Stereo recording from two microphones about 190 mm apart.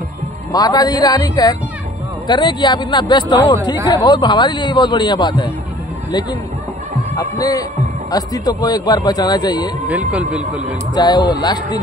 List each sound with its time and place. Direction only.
0.5 s a man's voice: 20° left (ahead or behind)
7.2 s a man's voice: 20° left (ahead or behind)
9.8 s speech: 5° right (ahead or behind)
11.0 s a man's voice: 25° left (ahead or behind)